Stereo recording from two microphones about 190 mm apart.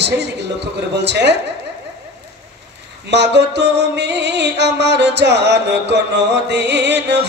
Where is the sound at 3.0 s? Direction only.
65° right (ahead or behind).